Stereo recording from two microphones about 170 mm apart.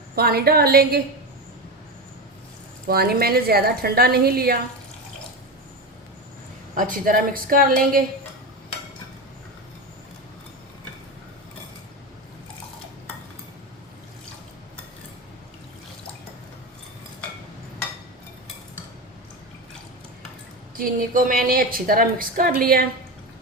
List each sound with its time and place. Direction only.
0.2 s a woman's voice: 65° right (ahead or behind)
2.8 s a woman's voice: 65° right (ahead or behind)
6.7 s a woman's voice: 55° right (ahead or behind)
20.7 s a woman's voice: 55° right (ahead or behind)